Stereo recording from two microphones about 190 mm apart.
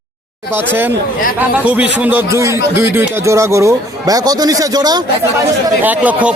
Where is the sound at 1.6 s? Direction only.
5° right (ahead or behind).